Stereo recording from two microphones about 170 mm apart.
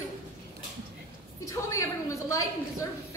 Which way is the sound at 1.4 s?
20° left (ahead or behind).